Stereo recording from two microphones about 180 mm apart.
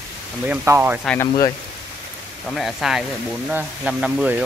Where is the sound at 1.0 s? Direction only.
5° left (ahead or behind).